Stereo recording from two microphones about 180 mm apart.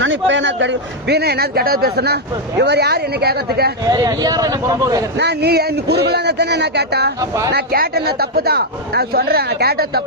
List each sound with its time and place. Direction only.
0.0 s a man's voice: 90° right; by 3.7 s 60° right (ahead or behind)
3.8 s speech: 20° right (ahead or behind)
5.1 s a man's voice: 70° right (ahead or behind)
7.2 s speech: 20° right (ahead or behind)
7.5 s a man's voice: 60° right (ahead or behind)